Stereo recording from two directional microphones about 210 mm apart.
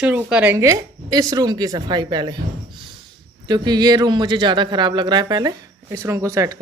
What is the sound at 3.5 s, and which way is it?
Speech, 20° right (ahead or behind).